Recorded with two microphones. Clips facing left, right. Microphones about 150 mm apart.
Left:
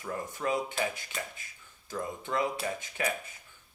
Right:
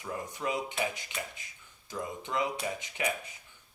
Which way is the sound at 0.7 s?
20° right (ahead or behind).